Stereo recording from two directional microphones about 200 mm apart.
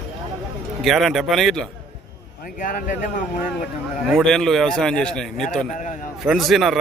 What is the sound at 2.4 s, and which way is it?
Speech, 45° left (ahead or behind).